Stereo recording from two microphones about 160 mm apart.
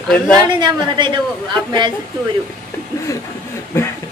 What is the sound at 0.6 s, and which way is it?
Speech, 30° right (ahead or behind).